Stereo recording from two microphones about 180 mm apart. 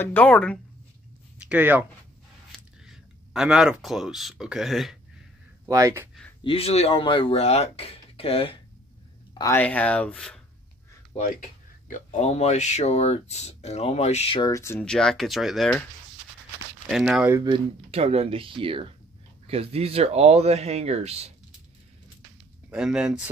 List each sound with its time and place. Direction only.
0.0 s speech: 10° left (ahead or behind)
1.5 s speech: 10° right (ahead or behind)
5.7 s speech: 20° right (ahead or behind)
6.4 s speech: 35° left (ahead or behind)
9.3 s a sound: 20° left (ahead or behind)
9.6 s speech: 10° left (ahead or behind)
11.9 s speech: 40° left (ahead or behind)
14.5 s speech: 15° left (ahead or behind)
14.9 s speech: 5° left (ahead or behind)
16.8 s speech: centre (ahead or behind)
17.5 s speech: 35° right (ahead or behind)
22.7 s speech: 5° right (ahead or behind)